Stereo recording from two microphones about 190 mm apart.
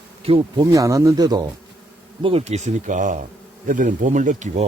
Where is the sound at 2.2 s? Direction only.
35° right (ahead or behind).